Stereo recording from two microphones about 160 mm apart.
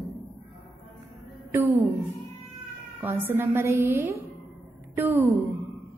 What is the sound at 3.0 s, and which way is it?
A woman's voice, 15° right (ahead or behind).